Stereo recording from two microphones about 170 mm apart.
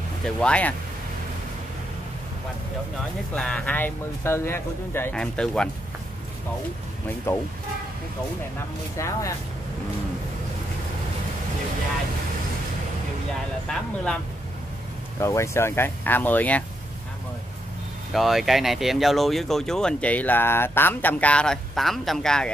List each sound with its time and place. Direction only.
0.2 s speech: 5° left (ahead or behind)
3.3 s speech: 5° left (ahead or behind)
7.3 s speech: 15° left (ahead or behind)
8.9 s speech: 20° left (ahead or behind)
13.7 s speech: 5° left (ahead or behind)
15.1 s speech: 15° left (ahead or behind)
18.1 s speech: centre (ahead or behind)